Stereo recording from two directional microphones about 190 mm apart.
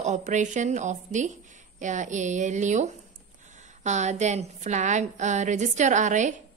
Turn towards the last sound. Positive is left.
turn(degrees=-40)  # may be behind; listen again after turning